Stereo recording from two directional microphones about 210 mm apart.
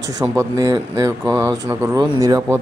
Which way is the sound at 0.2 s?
15° right (ahead or behind).